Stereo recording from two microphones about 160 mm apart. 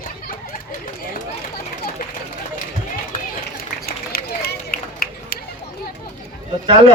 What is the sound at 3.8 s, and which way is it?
Run, 75° left (ahead or behind).